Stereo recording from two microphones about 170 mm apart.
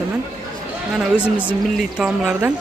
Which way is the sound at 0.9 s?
5° right (ahead or behind).